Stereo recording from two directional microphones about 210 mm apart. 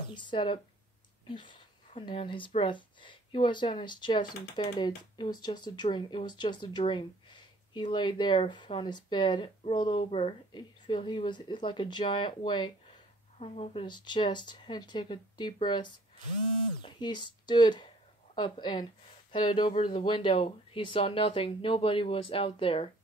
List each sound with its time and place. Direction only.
0.1 s speech: 20° left (ahead or behind)
1.2 s a sound: 20° left (ahead or behind)
2.0 s speech: 25° left (ahead or behind)